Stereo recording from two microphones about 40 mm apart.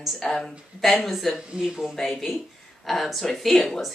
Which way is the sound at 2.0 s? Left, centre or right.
Centre.